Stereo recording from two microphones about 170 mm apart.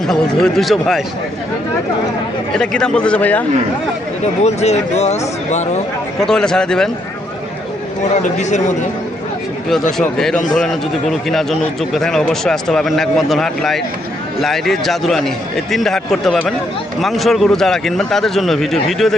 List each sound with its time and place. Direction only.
0.1 s a man's voice: 5° left (ahead or behind)
2.6 s a man's voice: 5° left (ahead or behind)
4.2 s speech: 40° left (ahead or behind)
6.1 s a man's voice: 5° left (ahead or behind)
8.0 s speech: 45° left (ahead or behind)
10.0 s a man's voice: centre (ahead or behind)